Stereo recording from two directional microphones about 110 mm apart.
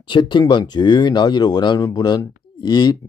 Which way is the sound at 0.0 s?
45° left (ahead or behind).